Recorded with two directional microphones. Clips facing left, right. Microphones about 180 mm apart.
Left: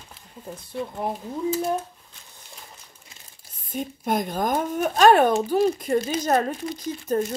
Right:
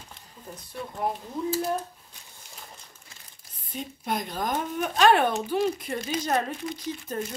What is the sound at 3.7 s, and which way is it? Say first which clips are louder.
Speech: left 6 dB; 50° left (ahead or behind).